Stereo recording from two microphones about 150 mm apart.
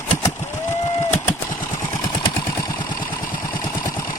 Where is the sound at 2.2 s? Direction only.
30° left (ahead or behind).